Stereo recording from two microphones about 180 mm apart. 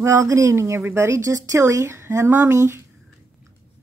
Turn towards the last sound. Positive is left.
turn(degrees=-15)  # may be behind; listen again after turning